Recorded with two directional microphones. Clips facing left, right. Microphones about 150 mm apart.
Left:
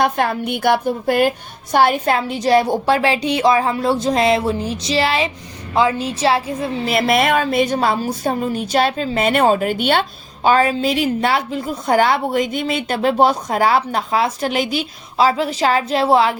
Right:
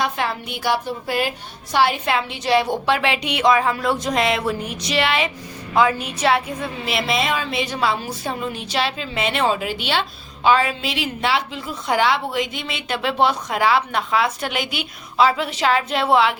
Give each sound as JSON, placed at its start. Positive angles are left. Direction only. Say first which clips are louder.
{"t": 0.0, "sound": "a woman's voice", "louder": "left 6 dB", "side_deg": 55}
{"t": 1.7, "sound": "a sound", "louder": "left 4 dB", "side_deg": 50}
{"t": 5.7, "sound": "a woman's voice", "louder": "left 2 dB", "side_deg": 30}
{"t": 6.9, "sound": "a woman's voice", "louder": "left 6 dB", "side_deg": 55}